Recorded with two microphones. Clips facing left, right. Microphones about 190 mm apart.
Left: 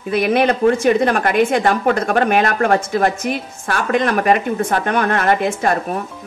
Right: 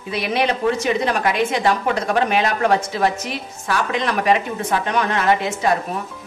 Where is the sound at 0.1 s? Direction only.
50° left (ahead or behind).